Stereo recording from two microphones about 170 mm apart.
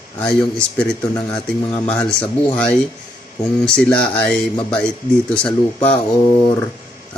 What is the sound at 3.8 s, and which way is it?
Speech, 5° left (ahead or behind).